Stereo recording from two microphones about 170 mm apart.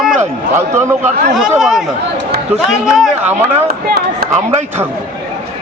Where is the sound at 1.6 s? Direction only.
Centre (ahead or behind).